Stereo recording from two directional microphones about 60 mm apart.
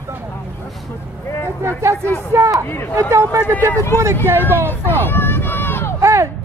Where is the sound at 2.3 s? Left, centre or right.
Right.